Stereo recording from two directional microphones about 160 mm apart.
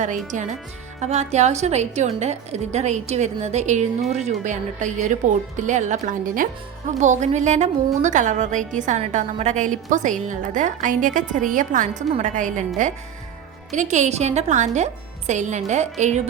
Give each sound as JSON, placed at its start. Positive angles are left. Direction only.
{"t": 0.3, "sound": "a woman's voice", "side_deg": -50}